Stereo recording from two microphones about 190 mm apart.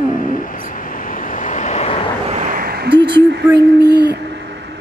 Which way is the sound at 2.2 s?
40° right (ahead or behind).